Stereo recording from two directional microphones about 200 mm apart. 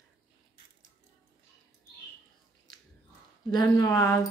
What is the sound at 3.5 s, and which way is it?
Speech, 20° left (ahead or behind).